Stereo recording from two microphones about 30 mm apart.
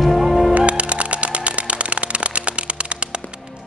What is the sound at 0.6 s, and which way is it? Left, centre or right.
Music, right.